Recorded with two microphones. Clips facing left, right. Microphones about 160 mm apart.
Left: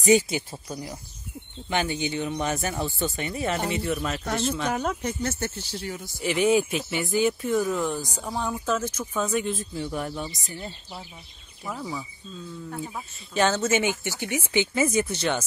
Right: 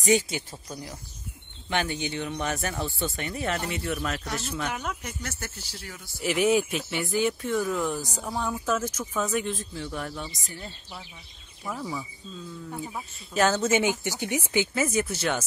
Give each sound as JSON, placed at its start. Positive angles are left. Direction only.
{"t": 0.0, "sound": "speech", "side_deg": 10}
{"t": 1.7, "sound": "speech", "side_deg": 0}
{"t": 4.6, "sound": "speech", "side_deg": 35}
{"t": 6.2, "sound": "speech", "side_deg": -5}
{"t": 9.8, "sound": "speech", "side_deg": 10}
{"t": 10.6, "sound": "speech", "side_deg": 30}
{"t": 11.6, "sound": "speech", "side_deg": 5}
{"t": 12.7, "sound": "speech", "side_deg": -5}
{"t": 14.8, "sound": "speech", "side_deg": 0}